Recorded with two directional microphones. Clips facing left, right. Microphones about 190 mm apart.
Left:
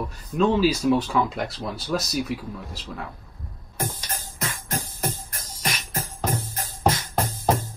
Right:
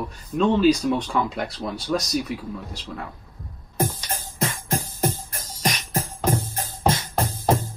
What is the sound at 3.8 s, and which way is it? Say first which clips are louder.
Music: right 5 dB; 25° right (ahead or behind).